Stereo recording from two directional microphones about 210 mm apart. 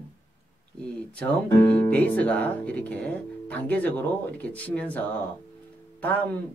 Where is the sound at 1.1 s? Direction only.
5° left (ahead or behind).